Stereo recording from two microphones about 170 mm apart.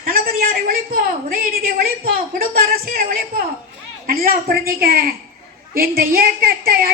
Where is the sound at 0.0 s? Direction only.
60° right (ahead or behind).